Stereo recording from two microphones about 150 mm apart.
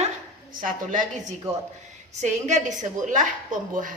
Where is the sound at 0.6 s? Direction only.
65° right (ahead or behind).